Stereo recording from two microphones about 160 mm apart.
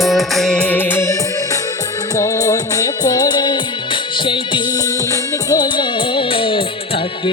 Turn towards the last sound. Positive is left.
turn(degrees=35)  # may be behind; listen again after turning